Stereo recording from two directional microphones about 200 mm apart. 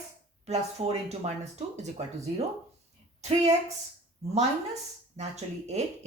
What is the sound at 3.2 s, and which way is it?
Speech, 35° right (ahead or behind).